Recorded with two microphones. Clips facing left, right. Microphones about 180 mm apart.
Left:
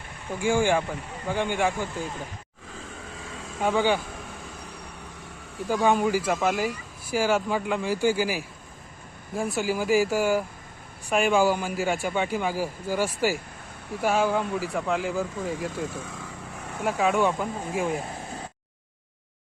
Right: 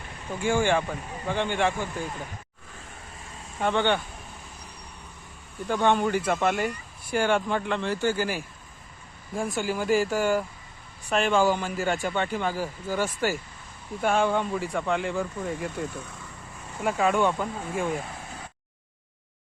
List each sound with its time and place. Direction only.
0.3 s a man's voice: 10° left (ahead or behind)
3.2 s vehicle: 90° left
3.6 s speech: 5° left (ahead or behind)
5.6 s a man's voice: 5° left (ahead or behind)
16.8 s speech: centre (ahead or behind)